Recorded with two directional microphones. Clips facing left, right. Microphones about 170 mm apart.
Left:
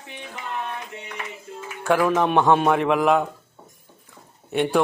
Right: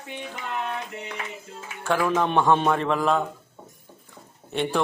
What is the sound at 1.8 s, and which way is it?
A man's voice, 15° left (ahead or behind).